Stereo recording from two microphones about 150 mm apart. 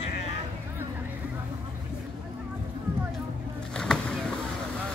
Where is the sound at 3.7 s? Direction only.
5° left (ahead or behind).